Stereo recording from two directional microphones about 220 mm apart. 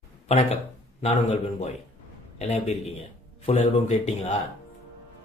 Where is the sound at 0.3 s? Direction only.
30° left (ahead or behind).